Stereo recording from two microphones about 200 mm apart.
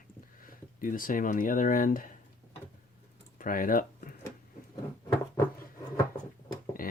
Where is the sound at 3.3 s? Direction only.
45° left (ahead or behind).